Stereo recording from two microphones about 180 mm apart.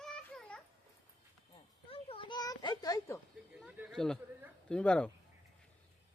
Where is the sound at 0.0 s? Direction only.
5° left (ahead or behind).